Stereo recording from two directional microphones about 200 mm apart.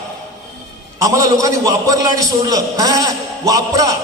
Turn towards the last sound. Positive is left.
turn(degrees=-15)  # may be behind; listen again after turning